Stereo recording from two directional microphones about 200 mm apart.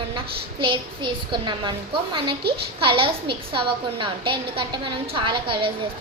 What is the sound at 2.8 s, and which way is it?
A woman's voice, 25° right (ahead or behind).